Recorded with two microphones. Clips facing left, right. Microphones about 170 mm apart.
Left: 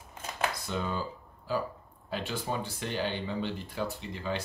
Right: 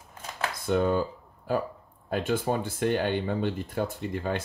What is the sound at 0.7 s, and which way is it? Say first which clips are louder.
Speech: right 9 dB; 55° right (ahead or behind).